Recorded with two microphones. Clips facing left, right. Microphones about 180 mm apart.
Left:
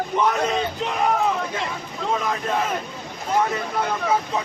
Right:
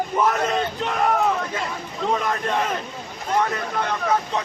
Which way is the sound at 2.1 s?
Centre (ahead or behind).